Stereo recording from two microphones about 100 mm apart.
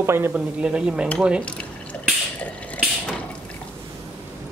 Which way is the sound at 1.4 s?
10° left (ahead or behind).